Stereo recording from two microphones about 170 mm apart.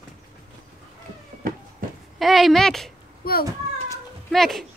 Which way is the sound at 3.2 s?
60° left (ahead or behind).